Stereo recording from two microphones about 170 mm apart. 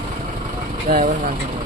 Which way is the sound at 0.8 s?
50° right (ahead or behind).